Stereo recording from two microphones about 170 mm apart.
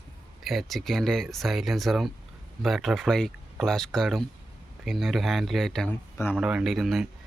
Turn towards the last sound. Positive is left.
turn(degrees=0)  # may be behind; listen again after turning